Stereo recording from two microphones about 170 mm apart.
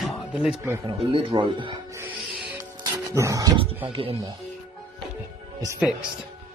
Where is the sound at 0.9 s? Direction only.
30° right (ahead or behind).